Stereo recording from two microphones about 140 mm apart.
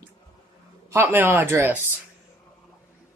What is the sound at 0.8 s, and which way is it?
Speech, 15° right (ahead or behind).